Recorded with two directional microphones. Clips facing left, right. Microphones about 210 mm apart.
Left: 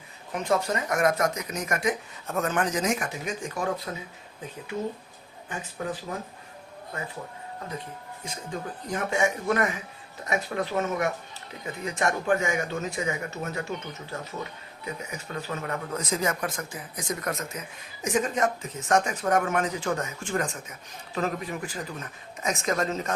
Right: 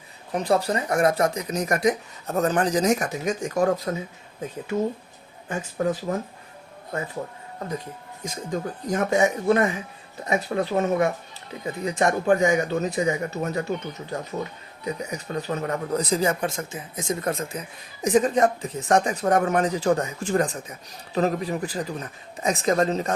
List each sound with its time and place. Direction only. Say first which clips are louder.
0.3 s speech: right 4 dB; 35° right (ahead or behind)
5.8 s speech: right 8 dB; 40° right (ahead or behind)
8.2 s speech: right 6 dB; 40° right (ahead or behind)